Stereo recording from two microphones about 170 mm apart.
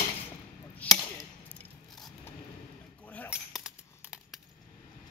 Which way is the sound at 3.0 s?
10° left (ahead or behind).